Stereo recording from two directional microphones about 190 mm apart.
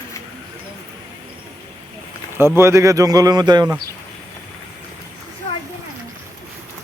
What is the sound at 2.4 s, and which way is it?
Speech, 15° right (ahead or behind).